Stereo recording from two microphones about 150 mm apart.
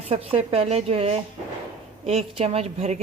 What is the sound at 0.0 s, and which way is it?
Speech, 40° right (ahead or behind).